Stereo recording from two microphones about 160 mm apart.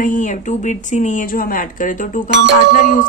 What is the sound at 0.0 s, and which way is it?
Speech, 55° left (ahead or behind).